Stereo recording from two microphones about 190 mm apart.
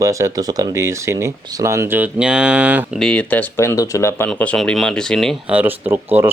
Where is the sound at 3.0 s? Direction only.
5° left (ahead or behind).